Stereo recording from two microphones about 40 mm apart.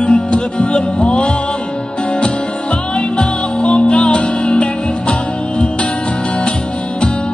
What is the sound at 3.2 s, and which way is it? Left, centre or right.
Music, left.